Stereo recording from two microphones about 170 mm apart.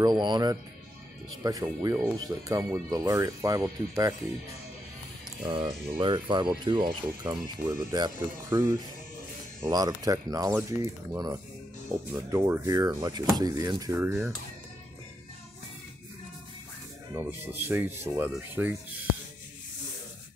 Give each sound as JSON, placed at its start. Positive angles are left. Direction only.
{"t": 0.0, "sound": "speech", "side_deg": -25}
{"t": 5.4, "sound": "speech", "side_deg": -30}
{"t": 7.2, "sound": "speech", "side_deg": -20}
{"t": 17.1, "sound": "speech", "side_deg": -15}